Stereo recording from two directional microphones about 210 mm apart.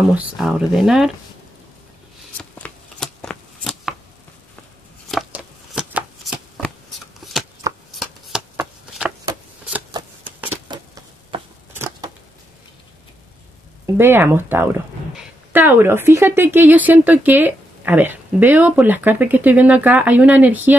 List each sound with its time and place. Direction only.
0.1 s speech: 5° right (ahead or behind)
2.3 s shuffling cards: 5° left (ahead or behind)
5.1 s shuffling cards: centre (ahead or behind)
7.6 s shuffling cards: 15° right (ahead or behind)
8.0 s shuffling cards: 5° right (ahead or behind)
10.7 s a sound: 20° right (ahead or behind)
11.7 s a sound: 10° right (ahead or behind)
13.9 s a woman's voice: 10° right (ahead or behind)